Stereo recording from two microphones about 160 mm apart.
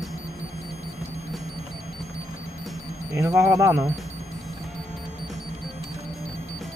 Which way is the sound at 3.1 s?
20° right (ahead or behind).